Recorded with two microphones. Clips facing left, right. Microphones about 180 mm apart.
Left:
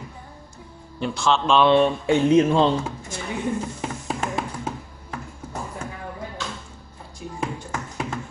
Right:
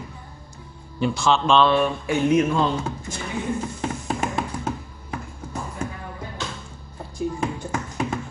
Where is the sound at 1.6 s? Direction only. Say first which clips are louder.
Left 2 dB; 25° left (ahead or behind).